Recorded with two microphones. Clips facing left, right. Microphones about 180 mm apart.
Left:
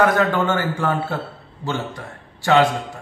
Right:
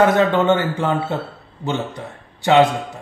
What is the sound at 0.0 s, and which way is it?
A man's voice, 25° right (ahead or behind).